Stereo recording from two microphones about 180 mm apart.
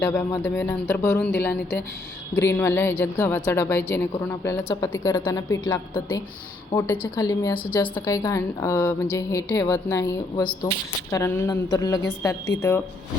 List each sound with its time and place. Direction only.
0.0 s speech: 15° left (ahead or behind)